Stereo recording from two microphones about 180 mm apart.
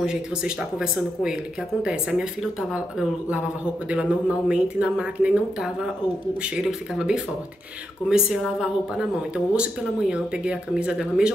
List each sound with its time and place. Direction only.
0.0 s speech: 5° right (ahead or behind)